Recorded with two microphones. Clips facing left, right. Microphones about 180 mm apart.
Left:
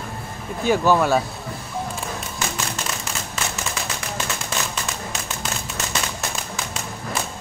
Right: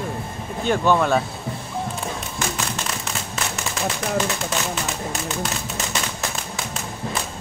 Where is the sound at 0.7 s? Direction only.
5° left (ahead or behind).